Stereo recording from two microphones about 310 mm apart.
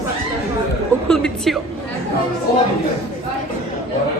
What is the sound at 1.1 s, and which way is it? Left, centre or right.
Speech, centre.